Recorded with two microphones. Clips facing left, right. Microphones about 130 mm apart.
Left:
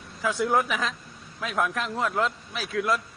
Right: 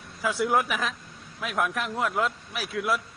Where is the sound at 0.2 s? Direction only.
5° right (ahead or behind).